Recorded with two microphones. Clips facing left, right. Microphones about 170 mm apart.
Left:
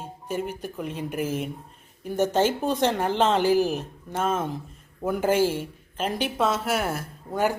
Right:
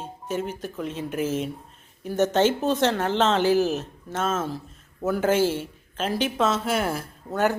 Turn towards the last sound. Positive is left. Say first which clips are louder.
# right 1 dB
turn(degrees=0)  # may be behind; listen again after turning